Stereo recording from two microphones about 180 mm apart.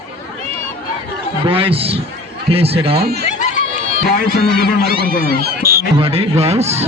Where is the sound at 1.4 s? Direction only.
30° right (ahead or behind).